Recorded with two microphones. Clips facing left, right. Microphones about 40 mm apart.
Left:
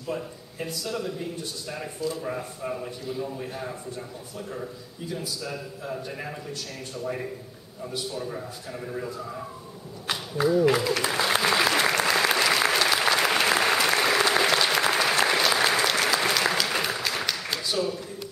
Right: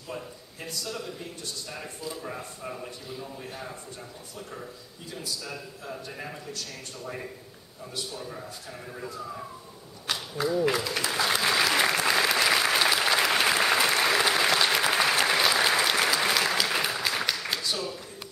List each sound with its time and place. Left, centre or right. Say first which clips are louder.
0.1 s a man's voice: left 5 dB; centre
2.0 s speech: left 9 dB; centre
2.2 s a man's voice: left 5 dB; centre
10.7 s applause: left 4 dB; centre
17.6 s speech: left 4 dB; centre